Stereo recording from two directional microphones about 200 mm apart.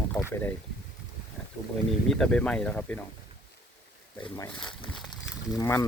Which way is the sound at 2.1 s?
5° left (ahead or behind).